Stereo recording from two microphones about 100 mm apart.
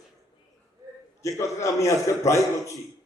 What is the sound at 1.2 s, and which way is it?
A man's voice, 30° left (ahead or behind).